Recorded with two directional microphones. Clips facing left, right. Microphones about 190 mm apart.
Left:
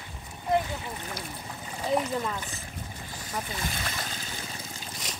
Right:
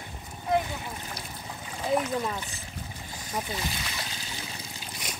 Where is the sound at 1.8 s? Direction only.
Centre (ahead or behind).